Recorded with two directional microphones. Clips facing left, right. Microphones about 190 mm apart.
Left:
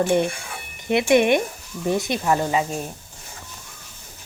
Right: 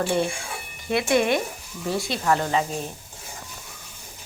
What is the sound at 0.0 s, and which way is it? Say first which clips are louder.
Speech: left 4 dB; 15° left (ahead or behind).